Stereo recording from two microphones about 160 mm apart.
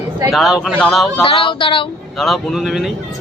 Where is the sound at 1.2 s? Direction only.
35° left (ahead or behind).